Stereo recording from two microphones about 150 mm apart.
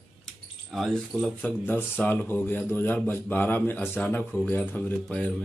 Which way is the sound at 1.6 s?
10° left (ahead or behind).